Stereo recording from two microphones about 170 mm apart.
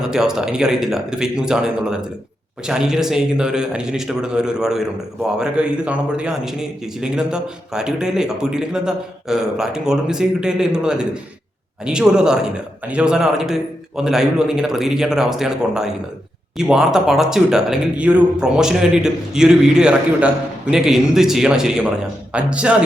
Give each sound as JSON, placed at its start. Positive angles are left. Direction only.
{"t": 0.1, "sound": "speech", "side_deg": -5}